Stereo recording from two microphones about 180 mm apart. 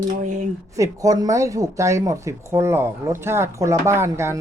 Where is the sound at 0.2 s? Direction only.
45° right (ahead or behind).